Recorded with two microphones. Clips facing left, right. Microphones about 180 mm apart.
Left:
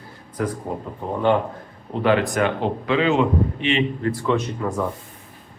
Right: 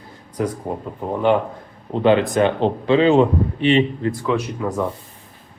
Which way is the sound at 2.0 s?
25° right (ahead or behind).